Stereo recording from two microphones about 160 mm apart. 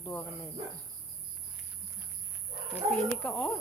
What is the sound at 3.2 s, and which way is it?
Cricket, 10° left (ahead or behind).